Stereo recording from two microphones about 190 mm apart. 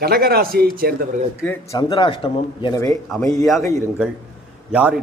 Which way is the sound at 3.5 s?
Centre (ahead or behind).